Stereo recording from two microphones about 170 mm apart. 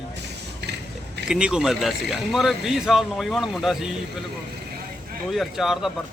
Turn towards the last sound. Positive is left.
turn(degrees=0)  # may be behind; listen again after turning